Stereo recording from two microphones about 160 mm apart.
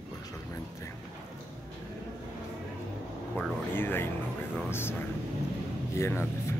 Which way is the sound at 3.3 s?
15° left (ahead or behind).